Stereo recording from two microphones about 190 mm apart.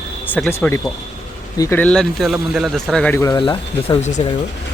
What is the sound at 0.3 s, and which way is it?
Speech, 5° left (ahead or behind).